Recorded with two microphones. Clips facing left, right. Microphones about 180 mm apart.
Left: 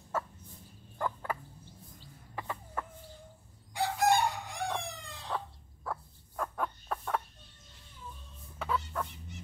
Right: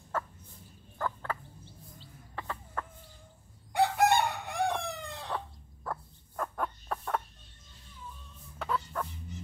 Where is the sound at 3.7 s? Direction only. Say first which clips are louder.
Right 3 dB; 60° right (ahead or behind).